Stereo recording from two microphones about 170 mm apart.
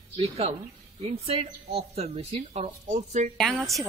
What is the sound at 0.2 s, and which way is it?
A woman's voice, 35° right (ahead or behind).